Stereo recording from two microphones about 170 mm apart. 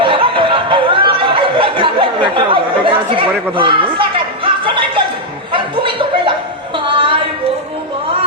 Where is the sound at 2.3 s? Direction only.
30° right (ahead or behind).